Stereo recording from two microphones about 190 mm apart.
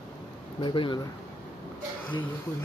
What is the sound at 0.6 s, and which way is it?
Speech, 25° left (ahead or behind).